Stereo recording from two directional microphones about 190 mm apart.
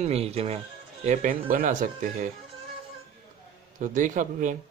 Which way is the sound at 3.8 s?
40° right (ahead or behind).